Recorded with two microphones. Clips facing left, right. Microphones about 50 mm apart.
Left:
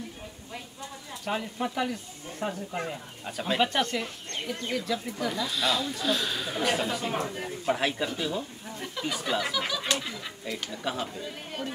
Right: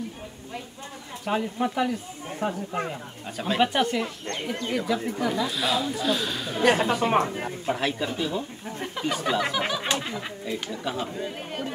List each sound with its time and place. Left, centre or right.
1.2 s speech: centre
4.9 s speech: right
5.2 s speech: centre
7.0 s speech: right
7.6 s speech: centre
8.2 s speech: centre
8.7 s a sound: right
9.4 s snicker: right
10.7 s speech: centre
11.1 s speech: right